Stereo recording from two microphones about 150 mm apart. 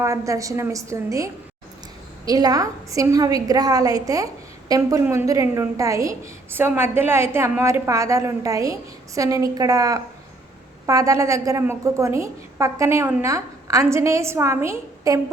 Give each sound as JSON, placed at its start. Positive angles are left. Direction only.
{"t": 0.0, "sound": "a woman's voice", "side_deg": -20}